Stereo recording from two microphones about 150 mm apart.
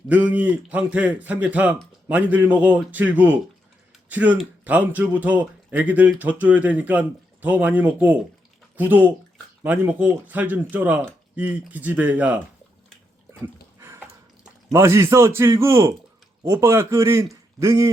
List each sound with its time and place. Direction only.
0.1 s speech: 10° right (ahead or behind)
13.4 s dog: 15° right (ahead or behind)
14.7 s a man's voice: 20° right (ahead or behind)